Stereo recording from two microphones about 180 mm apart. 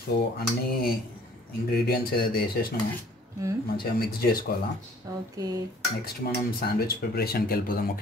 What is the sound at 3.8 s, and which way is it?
Speech, 60° left (ahead or behind).